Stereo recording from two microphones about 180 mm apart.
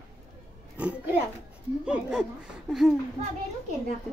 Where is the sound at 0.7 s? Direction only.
5° right (ahead or behind).